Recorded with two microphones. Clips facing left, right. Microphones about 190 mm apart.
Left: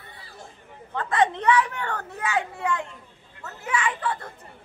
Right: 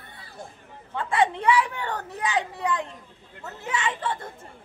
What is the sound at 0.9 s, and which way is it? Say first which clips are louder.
Speech: left 1 dB; 10° right (ahead or behind).